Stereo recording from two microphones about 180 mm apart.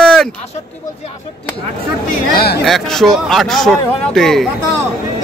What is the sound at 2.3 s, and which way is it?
Chatter, 60° left (ahead or behind).